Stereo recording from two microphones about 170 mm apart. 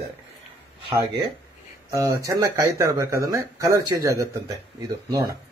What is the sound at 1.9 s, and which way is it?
Speech, 20° right (ahead or behind).